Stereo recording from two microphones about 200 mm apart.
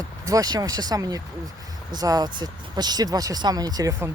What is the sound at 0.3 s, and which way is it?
Speech, 20° right (ahead or behind).